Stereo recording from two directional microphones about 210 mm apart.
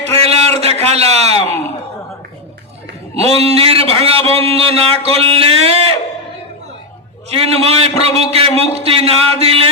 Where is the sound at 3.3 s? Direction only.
30° right (ahead or behind).